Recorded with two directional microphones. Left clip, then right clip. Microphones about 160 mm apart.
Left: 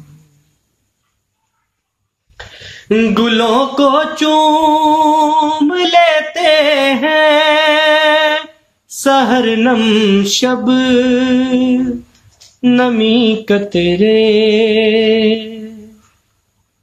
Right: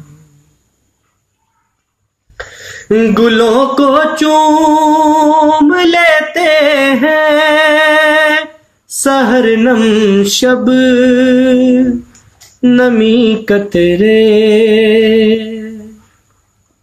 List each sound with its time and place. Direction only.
2.9 s music: 20° left (ahead or behind)
12.5 s mantra: 15° left (ahead or behind)